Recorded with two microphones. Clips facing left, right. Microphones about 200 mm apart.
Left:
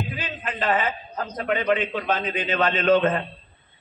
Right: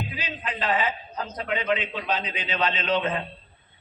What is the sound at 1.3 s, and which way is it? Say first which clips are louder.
A man's voice: left 4 dB; 50° left (ahead or behind).